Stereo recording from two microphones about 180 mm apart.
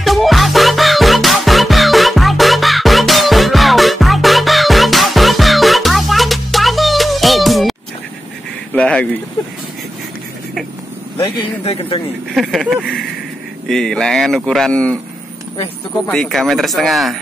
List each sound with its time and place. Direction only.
0.0 s music: centre (ahead or behind)
8.7 s speech: 5° left (ahead or behind)
11.6 s speech: 35° left (ahead or behind)
12.4 s speech: centre (ahead or behind)
16.1 s speech: 5° left (ahead or behind)